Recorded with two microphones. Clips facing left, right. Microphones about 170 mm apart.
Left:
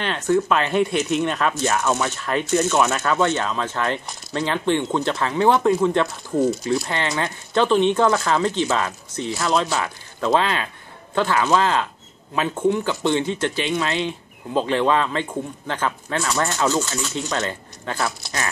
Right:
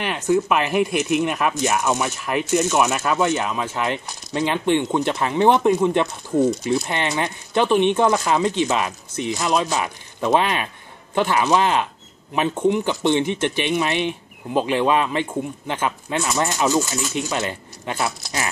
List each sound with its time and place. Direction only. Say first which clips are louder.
0.0 s speech: even; 10° right (ahead or behind)